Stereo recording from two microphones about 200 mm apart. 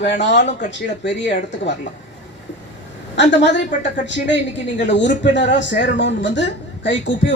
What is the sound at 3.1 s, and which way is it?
Speech, 60° left (ahead or behind).